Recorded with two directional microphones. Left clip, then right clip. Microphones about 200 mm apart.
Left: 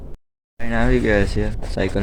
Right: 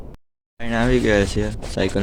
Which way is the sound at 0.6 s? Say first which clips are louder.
Right 1 dB; 15° right (ahead or behind).